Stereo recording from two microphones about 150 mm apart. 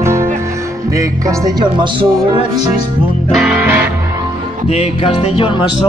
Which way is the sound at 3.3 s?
5° right (ahead or behind).